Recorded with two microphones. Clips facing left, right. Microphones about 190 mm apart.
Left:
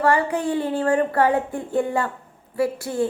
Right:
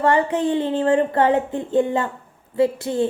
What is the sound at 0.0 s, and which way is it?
A woman's voice, 25° right (ahead or behind).